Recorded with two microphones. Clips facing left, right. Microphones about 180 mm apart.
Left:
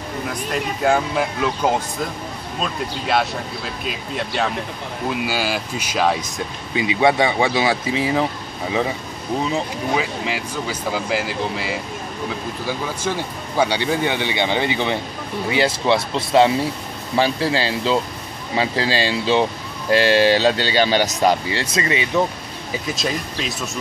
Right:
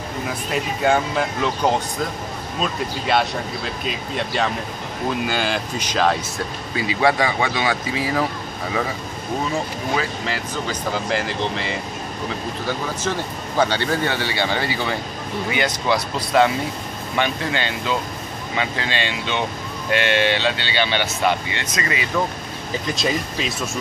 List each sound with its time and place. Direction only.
0.3 s speech: centre (ahead or behind); by 8.3 s 25° left (ahead or behind)
9.9 s speech: 15° left (ahead or behind)
13.6 s speech: 15° left (ahead or behind)
22.8 s speech: centre (ahead or behind)